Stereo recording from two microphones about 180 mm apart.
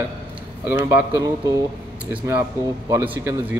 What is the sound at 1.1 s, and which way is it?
Speech, 20° right (ahead or behind).